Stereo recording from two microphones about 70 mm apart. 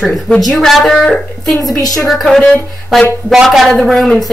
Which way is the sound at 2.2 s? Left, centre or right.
Centre.